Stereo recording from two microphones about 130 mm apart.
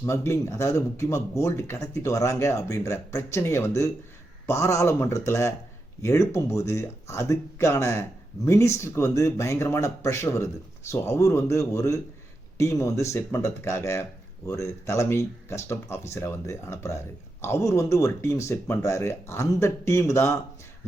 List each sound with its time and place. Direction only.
0.0 s speech: 20° left (ahead or behind)